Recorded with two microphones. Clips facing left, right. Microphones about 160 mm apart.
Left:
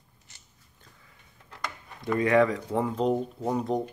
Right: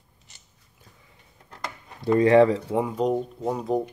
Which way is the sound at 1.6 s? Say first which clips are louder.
Right 2 dB; 30° right (ahead or behind).